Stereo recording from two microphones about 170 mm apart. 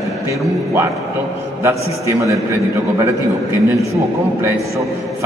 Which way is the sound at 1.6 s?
15° right (ahead or behind).